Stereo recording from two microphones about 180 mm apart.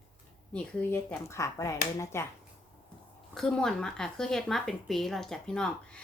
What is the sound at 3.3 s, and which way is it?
A woman's voice, 5° left (ahead or behind).